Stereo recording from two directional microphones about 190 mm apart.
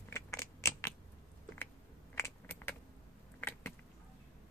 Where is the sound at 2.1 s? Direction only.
10° left (ahead or behind).